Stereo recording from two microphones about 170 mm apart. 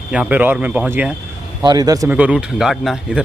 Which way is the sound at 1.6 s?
25° right (ahead or behind).